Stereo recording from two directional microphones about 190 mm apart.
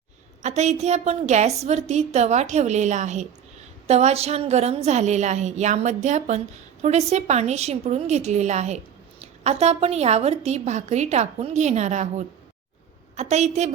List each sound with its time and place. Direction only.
0.4 s a woman's voice: 35° right (ahead or behind)